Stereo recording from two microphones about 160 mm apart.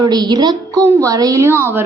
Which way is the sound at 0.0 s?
25° right (ahead or behind).